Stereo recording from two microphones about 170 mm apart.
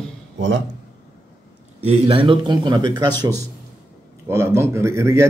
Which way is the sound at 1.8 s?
35° right (ahead or behind).